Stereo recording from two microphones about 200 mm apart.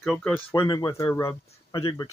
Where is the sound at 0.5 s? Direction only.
20° left (ahead or behind).